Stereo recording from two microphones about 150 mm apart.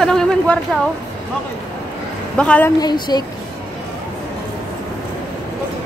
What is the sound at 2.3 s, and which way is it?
Speech, 10° left (ahead or behind).